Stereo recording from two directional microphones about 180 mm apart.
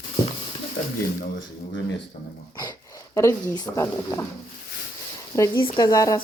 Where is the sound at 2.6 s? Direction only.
20° left (ahead or behind).